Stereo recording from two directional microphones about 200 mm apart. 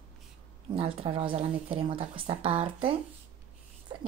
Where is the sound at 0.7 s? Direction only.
25° right (ahead or behind).